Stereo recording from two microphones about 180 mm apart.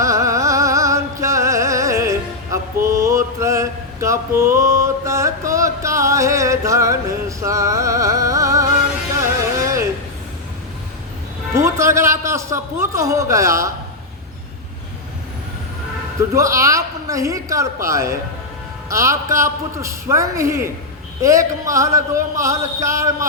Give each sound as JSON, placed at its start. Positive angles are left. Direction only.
{"t": 0.0, "sound": "music", "side_deg": -15}
{"t": 11.5, "sound": "a man's voice", "side_deg": -15}
{"t": 16.3, "sound": "speech", "side_deg": -15}